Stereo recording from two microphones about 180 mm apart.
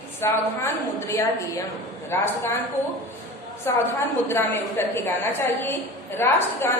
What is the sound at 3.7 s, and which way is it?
A woman's voice, 15° left (ahead or behind).